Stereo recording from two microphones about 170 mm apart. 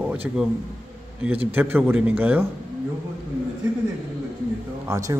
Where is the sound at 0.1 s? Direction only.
10° right (ahead or behind).